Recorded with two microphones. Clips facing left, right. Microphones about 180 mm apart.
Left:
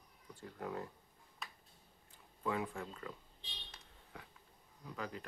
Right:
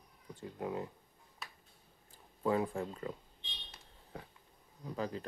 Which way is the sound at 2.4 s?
35° right (ahead or behind).